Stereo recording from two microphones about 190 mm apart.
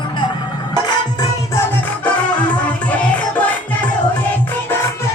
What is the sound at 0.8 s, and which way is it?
Music, 20° left (ahead or behind).